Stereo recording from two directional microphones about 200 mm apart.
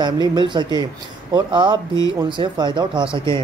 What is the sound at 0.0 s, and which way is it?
Speech, 20° right (ahead or behind).